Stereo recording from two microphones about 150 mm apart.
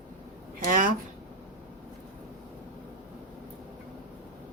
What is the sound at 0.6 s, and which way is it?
Speech, 65° right (ahead or behind).